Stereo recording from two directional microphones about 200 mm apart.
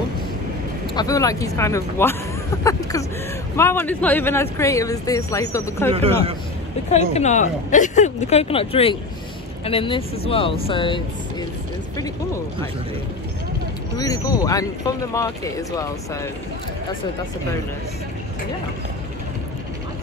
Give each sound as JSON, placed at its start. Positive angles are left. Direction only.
{"t": 0.9, "sound": "speech", "side_deg": 15}
{"t": 5.9, "sound": "a man's voice", "side_deg": -30}
{"t": 6.9, "sound": "speech", "side_deg": 35}
{"t": 13.9, "sound": "speech", "side_deg": 20}